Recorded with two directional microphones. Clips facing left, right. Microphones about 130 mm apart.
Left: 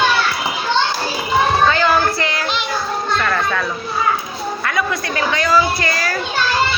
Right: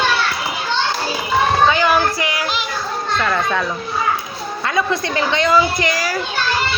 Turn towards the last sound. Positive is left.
turn(degrees=-15)  # may be behind; listen again after turning